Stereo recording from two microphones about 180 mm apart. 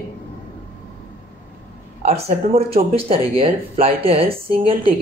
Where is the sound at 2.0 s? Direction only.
35° right (ahead or behind).